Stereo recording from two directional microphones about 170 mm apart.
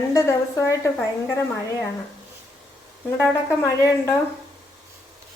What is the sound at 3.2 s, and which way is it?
Speech, 15° left (ahead or behind).